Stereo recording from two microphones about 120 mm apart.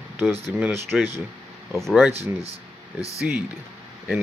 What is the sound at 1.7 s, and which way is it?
Speech, centre (ahead or behind).